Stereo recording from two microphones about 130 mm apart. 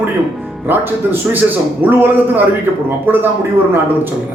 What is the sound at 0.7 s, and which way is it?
Speech, 15° right (ahead or behind).